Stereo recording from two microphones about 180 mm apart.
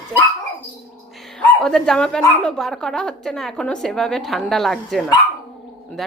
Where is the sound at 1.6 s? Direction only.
5° left (ahead or behind).